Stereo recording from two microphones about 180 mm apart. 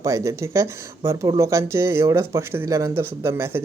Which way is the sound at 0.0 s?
15° right (ahead or behind).